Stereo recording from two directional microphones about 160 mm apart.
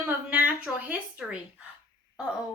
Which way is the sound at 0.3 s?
10° right (ahead or behind).